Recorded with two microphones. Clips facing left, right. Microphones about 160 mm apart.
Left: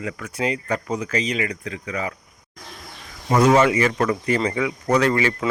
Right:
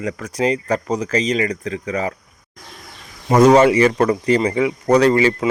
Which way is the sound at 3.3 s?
40° right (ahead or behind).